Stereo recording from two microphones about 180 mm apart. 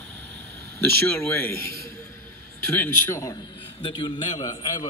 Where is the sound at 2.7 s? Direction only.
10° left (ahead or behind).